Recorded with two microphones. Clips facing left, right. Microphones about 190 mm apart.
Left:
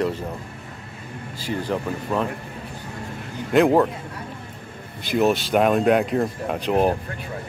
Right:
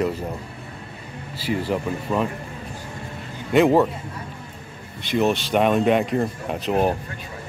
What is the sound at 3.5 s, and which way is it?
Speech, centre (ahead or behind).